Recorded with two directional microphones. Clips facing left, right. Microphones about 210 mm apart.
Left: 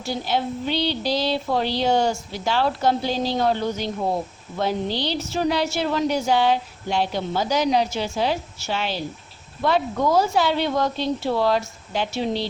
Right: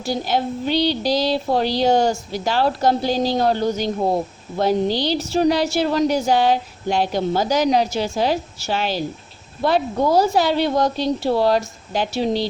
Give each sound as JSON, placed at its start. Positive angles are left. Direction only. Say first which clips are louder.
{"t": 0.0, "sound": "speech", "louder": "right 3 dB", "side_deg": -40}